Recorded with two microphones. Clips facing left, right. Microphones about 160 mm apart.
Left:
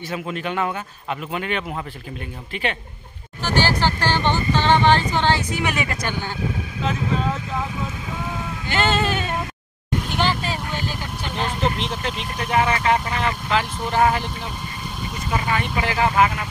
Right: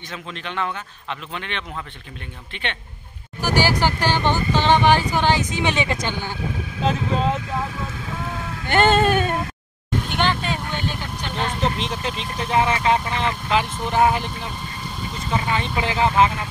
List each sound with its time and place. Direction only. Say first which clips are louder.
0.1 s a man's voice: left 5 dB; 10° left (ahead or behind)
3.4 s speech: right 1 dB; 10° right (ahead or behind); by 7.2 s 35° right (ahead or behind)
8.6 s speech: right 5 dB; 55° right (ahead or behind)
10.0 s vehicle: right 1 dB; 5° left (ahead or behind)
11.8 s speech: even; 15° right (ahead or behind)
15.5 s speech: even; 20° right (ahead or behind)